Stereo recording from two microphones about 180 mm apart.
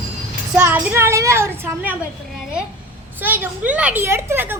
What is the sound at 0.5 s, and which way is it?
A woman's voice, 10° right (ahead or behind).